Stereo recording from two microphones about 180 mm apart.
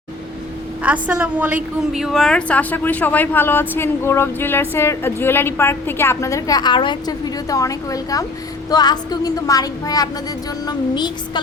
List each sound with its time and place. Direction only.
0.8 s a woman's voice: 10° right (ahead or behind); by 8.2 s 20° left (ahead or behind)
8.7 s music: 20° left (ahead or behind)